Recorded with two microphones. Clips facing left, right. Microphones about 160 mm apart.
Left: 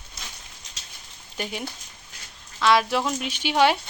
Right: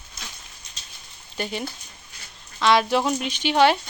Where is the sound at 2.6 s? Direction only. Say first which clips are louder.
Right 1 dB; centre (ahead or behind).